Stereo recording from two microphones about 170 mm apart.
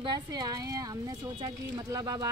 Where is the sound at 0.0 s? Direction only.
25° right (ahead or behind).